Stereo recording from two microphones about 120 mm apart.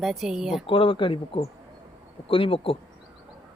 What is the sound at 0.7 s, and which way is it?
Speech, 45° left (ahead or behind).